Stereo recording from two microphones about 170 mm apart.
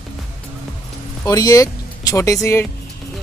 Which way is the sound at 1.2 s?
20° left (ahead or behind).